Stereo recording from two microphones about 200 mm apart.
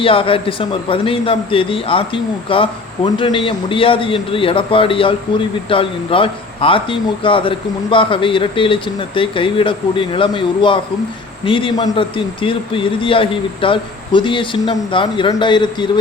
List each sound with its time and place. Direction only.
0.0 s a man's voice: 25° left (ahead or behind)